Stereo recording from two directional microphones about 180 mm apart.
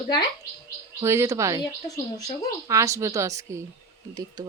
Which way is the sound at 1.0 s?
15° right (ahead or behind).